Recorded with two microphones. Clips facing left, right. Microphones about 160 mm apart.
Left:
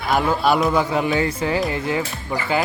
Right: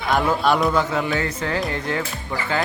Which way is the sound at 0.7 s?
20° left (ahead or behind).